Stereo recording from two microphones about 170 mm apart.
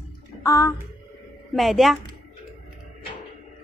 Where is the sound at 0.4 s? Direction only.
20° left (ahead or behind).